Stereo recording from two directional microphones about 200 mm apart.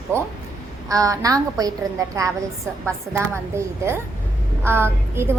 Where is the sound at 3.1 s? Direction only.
15° right (ahead or behind).